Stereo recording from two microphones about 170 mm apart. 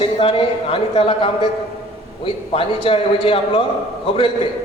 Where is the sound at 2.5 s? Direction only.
30° left (ahead or behind).